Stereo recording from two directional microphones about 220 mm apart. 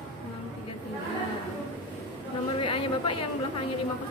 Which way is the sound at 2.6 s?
25° left (ahead or behind).